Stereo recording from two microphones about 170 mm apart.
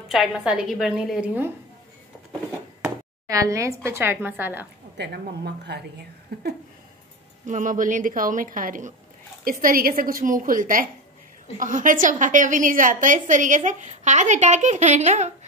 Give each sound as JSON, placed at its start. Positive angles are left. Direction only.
{"t": 0.1, "sound": "a woman's voice", "side_deg": 0}
{"t": 3.3, "sound": "a woman's voice", "side_deg": -20}
{"t": 4.9, "sound": "a woman's voice", "side_deg": -75}
{"t": 6.3, "sound": "a sound", "side_deg": -70}
{"t": 7.4, "sound": "a woman's voice", "side_deg": -50}